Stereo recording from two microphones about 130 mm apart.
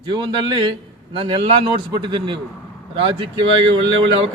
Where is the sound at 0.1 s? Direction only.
35° right (ahead or behind).